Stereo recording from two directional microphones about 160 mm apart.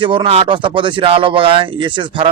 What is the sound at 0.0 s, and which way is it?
Speech, 30° right (ahead or behind).